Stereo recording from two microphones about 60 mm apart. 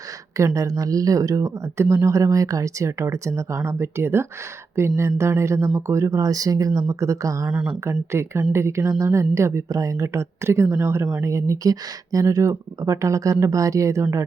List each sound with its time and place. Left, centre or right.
0.3 s speech: right
2.0 s speech: right
6.1 s speech: right
7.9 s speech: right
8.8 s speech: right
9.1 s speech: right
12.3 s speech: right